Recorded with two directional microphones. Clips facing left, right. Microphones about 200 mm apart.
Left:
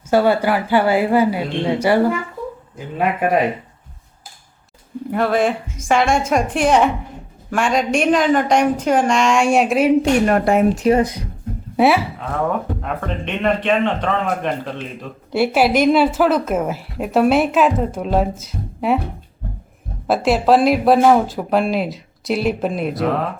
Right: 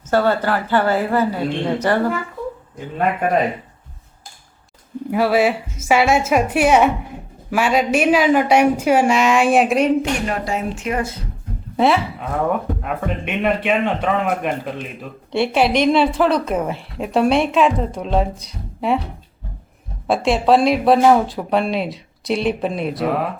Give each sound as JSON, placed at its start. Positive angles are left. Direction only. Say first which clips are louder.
{"t": 0.1, "sound": "speech", "louder": "left 2 dB", "side_deg": 10}
{"t": 5.1, "sound": "a man's voice", "louder": "right 1 dB", "side_deg": -5}
{"t": 10.2, "sound": "speech", "louder": "left 8 dB", "side_deg": 55}
{"t": 10.8, "sound": "speech", "louder": "left 8 dB", "side_deg": 35}
{"t": 11.8, "sound": "speech", "louder": "left 2 dB", "side_deg": 10}
{"t": 12.8, "sound": "a man's voice", "louder": "right 1 dB", "side_deg": -5}
{"t": 15.3, "sound": "a woman's voice", "louder": "left 1 dB", "side_deg": 5}
{"t": 20.1, "sound": "a woman's voice", "louder": "left 1 dB", "side_deg": 0}